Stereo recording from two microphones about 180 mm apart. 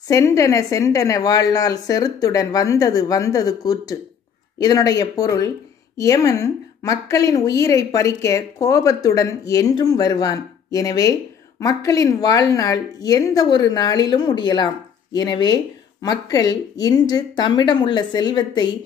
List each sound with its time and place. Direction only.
0.1 s a woman's voice: 15° left (ahead or behind)